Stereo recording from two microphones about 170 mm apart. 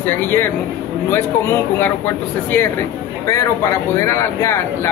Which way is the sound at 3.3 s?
20° left (ahead or behind).